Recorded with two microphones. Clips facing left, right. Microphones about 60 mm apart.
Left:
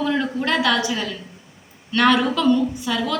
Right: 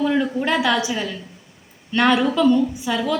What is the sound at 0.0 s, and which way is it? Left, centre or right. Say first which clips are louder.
A woman's voice: right 2 dB; centre.